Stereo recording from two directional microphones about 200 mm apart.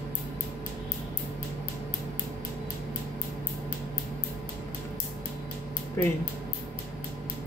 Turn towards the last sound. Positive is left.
turn(degrees=10)  # may be behind; listen again after turning